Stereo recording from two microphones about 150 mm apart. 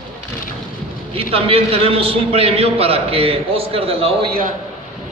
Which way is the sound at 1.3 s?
40° right (ahead or behind).